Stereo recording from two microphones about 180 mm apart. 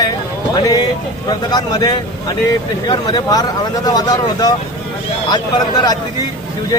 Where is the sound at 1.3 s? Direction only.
20° left (ahead or behind).